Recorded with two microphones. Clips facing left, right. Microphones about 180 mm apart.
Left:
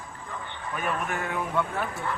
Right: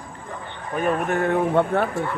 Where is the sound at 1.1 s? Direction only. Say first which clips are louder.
Right 9 dB; 50° right (ahead or behind).